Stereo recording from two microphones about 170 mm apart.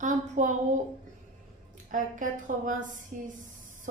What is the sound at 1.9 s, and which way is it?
A woman's voice, 50° right (ahead or behind).